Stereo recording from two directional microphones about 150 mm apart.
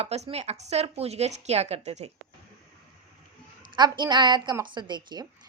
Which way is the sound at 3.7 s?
30° right (ahead or behind).